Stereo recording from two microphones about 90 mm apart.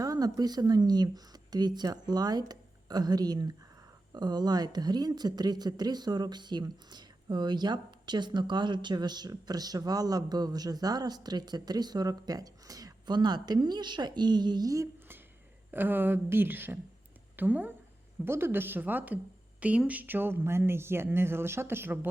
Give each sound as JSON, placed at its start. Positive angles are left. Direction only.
{"t": 0.0, "sound": "a woman's voice", "side_deg": -40}
{"t": 15.7, "sound": "a woman's voice", "side_deg": -25}